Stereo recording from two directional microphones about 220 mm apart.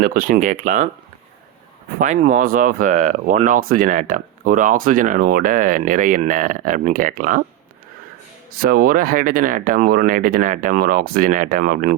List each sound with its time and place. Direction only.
0.0 s speech: 40° right (ahead or behind)
2.0 s speech: 35° right (ahead or behind)
8.6 s speech: 40° right (ahead or behind)